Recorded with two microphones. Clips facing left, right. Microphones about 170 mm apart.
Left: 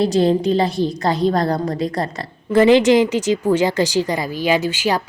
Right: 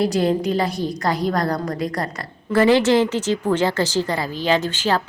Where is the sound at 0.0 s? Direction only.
25° left (ahead or behind).